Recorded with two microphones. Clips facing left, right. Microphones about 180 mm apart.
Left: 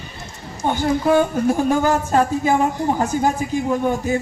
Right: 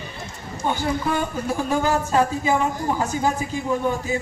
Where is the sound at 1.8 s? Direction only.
50° left (ahead or behind).